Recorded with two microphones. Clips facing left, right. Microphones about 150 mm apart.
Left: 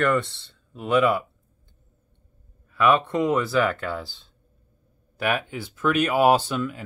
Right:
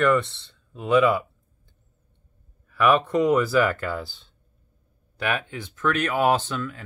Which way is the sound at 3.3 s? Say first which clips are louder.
Right 1 dB; centre (ahead or behind).